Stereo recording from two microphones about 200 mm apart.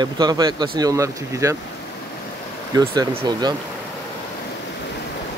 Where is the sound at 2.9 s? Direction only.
25° right (ahead or behind).